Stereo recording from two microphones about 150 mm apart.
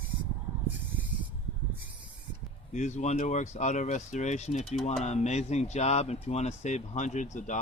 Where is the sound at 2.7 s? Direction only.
50° left (ahead or behind).